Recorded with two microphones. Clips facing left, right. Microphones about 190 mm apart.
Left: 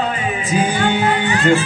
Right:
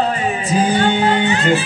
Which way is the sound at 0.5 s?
30° right (ahead or behind).